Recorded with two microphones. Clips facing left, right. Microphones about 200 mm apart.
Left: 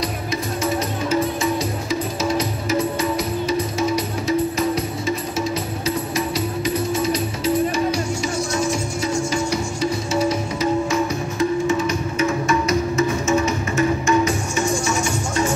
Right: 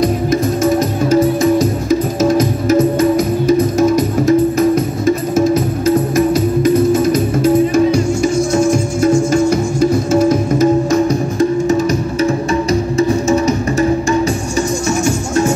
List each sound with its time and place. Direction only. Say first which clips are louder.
0.0 s music: right 11 dB; 50° right (ahead or behind)
14.9 s music: right 7 dB; 45° right (ahead or behind)